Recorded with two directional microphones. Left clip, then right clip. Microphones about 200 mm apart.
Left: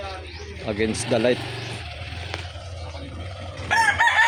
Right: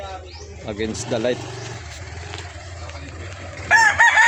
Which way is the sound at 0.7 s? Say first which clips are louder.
Left 2 dB; 20° left (ahead or behind).